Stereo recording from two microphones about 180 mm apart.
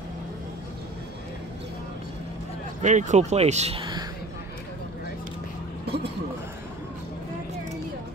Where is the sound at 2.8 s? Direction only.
40° right (ahead or behind); by 4.1 s 25° right (ahead or behind).